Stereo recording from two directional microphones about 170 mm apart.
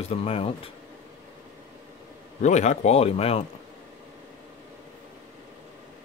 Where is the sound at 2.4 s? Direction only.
45° left (ahead or behind).